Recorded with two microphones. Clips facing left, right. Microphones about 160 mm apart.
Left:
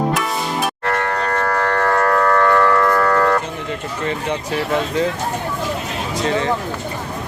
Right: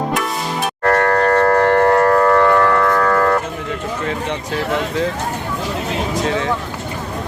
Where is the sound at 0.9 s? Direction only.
50° right (ahead or behind); by 2.5 s 20° right (ahead or behind).